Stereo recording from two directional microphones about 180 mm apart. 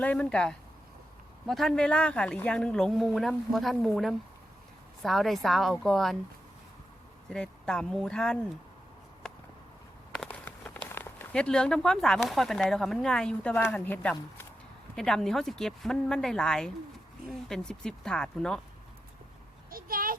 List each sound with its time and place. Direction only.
0.0 s speech: 5° left (ahead or behind)
7.3 s speech: 5° left (ahead or behind)
10.2 s speech: 10° left (ahead or behind)
19.7 s a sound: 50° right (ahead or behind)